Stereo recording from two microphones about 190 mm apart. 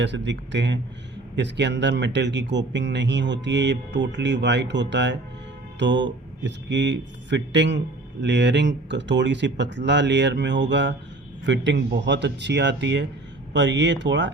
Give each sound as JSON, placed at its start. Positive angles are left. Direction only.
{"t": 0.0, "sound": "speech", "side_deg": -70}